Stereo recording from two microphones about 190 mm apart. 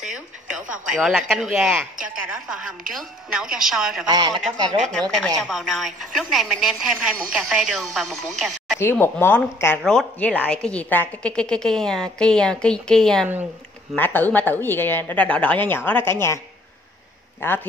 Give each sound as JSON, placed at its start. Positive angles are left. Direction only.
{"t": 0.0, "sound": "a woman's voice", "side_deg": -5}
{"t": 4.1, "sound": "a man's voice", "side_deg": -20}
{"t": 4.4, "sound": "a woman's voice", "side_deg": 0}
{"t": 17.4, "sound": "a woman's voice", "side_deg": 10}